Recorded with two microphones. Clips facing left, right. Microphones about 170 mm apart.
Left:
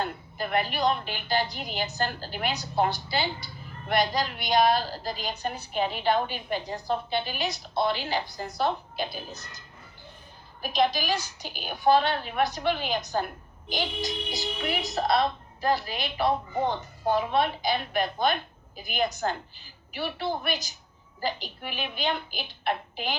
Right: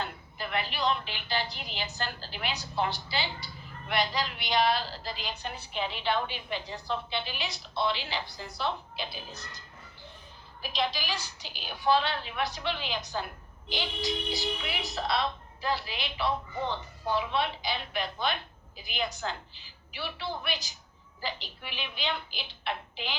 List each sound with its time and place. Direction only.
0.0 s a woman's voice: 45° left (ahead or behind)
10.6 s a woman's voice: 50° left (ahead or behind)